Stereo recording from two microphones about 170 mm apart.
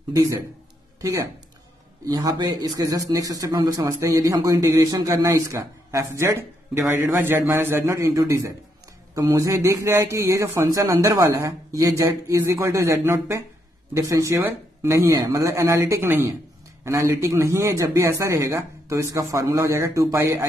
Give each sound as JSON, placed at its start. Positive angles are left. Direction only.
{"t": 0.1, "sound": "a man's voice", "side_deg": -20}